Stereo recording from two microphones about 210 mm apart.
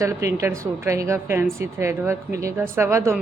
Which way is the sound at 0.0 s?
15° right (ahead or behind).